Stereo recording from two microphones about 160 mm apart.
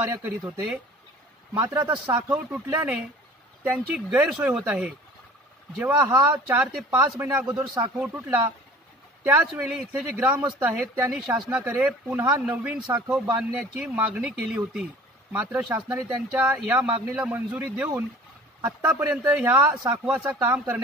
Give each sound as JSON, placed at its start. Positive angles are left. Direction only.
{"t": 0.1, "sound": "speech", "side_deg": -15}
{"t": 2.1, "sound": "speech", "side_deg": -10}
{"t": 6.3, "sound": "speech", "side_deg": -10}
{"t": 9.7, "sound": "speech", "side_deg": -5}